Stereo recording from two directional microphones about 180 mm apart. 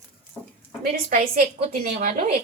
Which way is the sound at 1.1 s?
50° right (ahead or behind).